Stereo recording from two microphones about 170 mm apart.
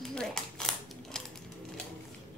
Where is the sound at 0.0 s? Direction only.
5° left (ahead or behind).